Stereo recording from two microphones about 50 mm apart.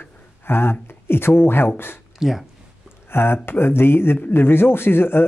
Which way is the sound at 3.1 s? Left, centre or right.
Left.